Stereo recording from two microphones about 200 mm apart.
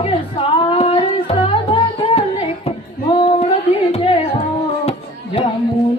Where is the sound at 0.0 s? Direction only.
30° left (ahead or behind).